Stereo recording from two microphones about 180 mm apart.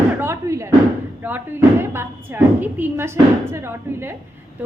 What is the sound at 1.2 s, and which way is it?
Speech, 10° right (ahead or behind).